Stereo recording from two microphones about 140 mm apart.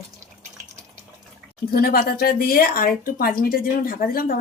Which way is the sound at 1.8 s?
90° left.